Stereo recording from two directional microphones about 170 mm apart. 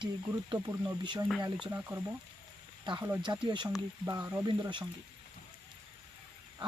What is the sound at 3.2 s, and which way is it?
Speech, 25° right (ahead or behind).